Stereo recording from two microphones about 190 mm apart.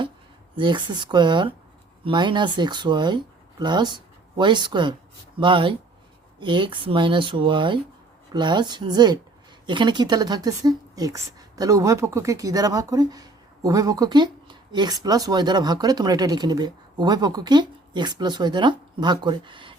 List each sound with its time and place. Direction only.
0.5 s speech: 25° right (ahead or behind)